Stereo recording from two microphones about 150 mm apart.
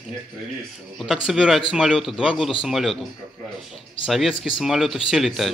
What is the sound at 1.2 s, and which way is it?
Speech, 5° right (ahead or behind).